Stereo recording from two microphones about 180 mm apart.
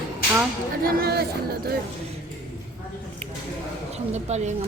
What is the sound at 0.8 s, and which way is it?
Speech, 55° right (ahead or behind).